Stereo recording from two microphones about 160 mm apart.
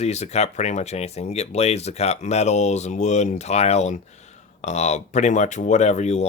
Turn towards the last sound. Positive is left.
turn(degrees=45)  # may be behind; listen again after turning